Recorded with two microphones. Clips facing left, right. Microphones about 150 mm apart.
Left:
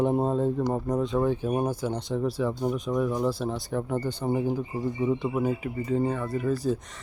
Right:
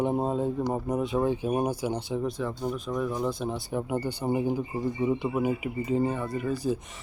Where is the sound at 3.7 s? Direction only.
10° right (ahead or behind).